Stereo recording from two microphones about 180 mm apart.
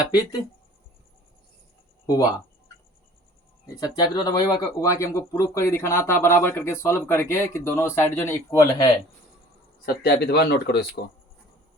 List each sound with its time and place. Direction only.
0.1 s speech: 20° left (ahead or behind)
2.0 s speech: 20° left (ahead or behind)
3.8 s speech: 20° left (ahead or behind)
9.8 s speech: 55° left (ahead or behind)